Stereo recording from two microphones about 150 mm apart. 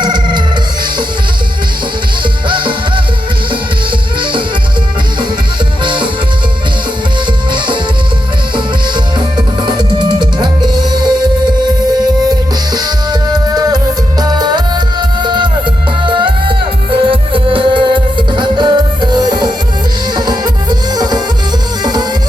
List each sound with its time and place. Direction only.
0.0 s music: 30° right (ahead or behind)
2.5 s music: 35° right (ahead or behind)
4.2 s music: 35° right (ahead or behind)
5.8 s music: 30° right (ahead or behind)
9.6 s music: 30° right (ahead or behind)